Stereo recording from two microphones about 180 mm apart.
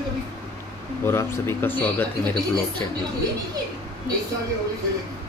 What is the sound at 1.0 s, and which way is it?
A man's voice, 15° left (ahead or behind).